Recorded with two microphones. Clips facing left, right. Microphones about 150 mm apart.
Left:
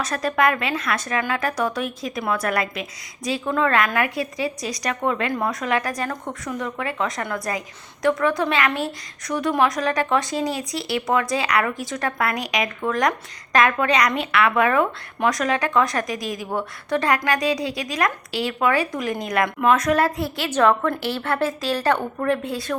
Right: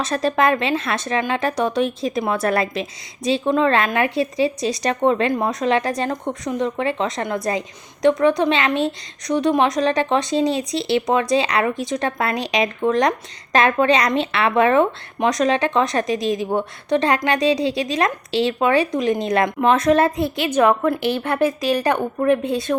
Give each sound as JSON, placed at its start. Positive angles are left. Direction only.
{"t": 0.0, "sound": "speech", "side_deg": -25}